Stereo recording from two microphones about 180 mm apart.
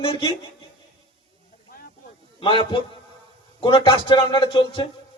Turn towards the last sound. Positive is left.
turn(degrees=25)  # may be behind; listen again after turning